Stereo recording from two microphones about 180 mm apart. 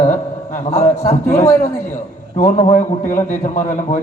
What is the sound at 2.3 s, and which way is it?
A man's voice, 45° left (ahead or behind).